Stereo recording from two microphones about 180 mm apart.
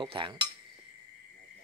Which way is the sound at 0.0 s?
30° right (ahead or behind).